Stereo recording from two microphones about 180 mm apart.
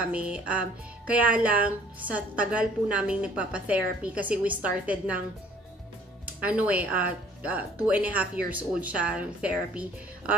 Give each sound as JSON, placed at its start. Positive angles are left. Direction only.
{"t": 0.0, "sound": "speech", "side_deg": -5}
{"t": 6.2, "sound": "speech", "side_deg": -10}